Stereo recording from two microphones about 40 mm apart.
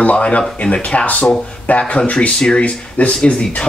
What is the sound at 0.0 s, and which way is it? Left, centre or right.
A woman's voice, left.